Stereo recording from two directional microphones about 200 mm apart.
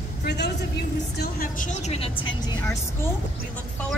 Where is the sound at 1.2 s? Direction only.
45° left (ahead or behind).